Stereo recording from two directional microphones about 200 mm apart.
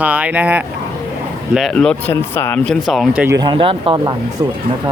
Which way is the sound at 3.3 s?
25° right (ahead or behind).